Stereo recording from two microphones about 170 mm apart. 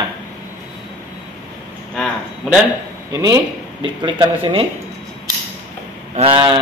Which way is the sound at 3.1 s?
20° right (ahead or behind).